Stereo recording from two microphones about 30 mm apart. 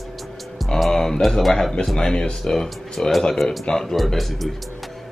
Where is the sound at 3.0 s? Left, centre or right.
Left.